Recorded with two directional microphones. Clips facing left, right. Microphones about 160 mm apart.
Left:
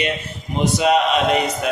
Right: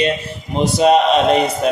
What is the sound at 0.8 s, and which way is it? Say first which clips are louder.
Speech: right 5 dB; 30° right (ahead or behind).